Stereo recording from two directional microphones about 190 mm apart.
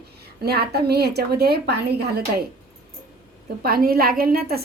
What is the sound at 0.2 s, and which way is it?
A woman's voice, 55° right (ahead or behind).